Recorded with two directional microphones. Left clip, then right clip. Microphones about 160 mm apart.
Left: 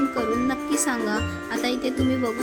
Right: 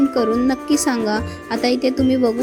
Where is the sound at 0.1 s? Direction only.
25° right (ahead or behind).